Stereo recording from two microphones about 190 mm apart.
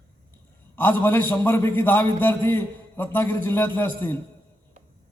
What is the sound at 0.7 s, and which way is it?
A man's voice, 10° left (ahead or behind).